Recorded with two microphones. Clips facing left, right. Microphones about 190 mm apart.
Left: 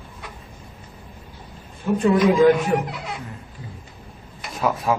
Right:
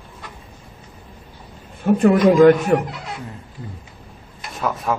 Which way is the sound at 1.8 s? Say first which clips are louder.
Right 4 dB; 55° right (ahead or behind).